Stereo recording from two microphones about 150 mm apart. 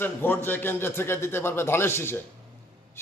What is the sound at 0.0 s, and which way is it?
A man's voice, 15° left (ahead or behind).